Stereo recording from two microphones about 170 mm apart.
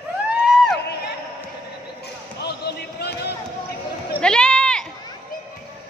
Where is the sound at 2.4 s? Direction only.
75° left (ahead or behind).